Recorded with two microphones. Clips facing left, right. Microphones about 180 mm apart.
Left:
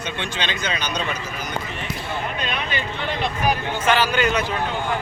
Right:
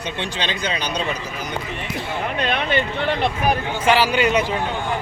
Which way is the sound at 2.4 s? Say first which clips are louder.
Right 6 dB; 60° right (ahead or behind).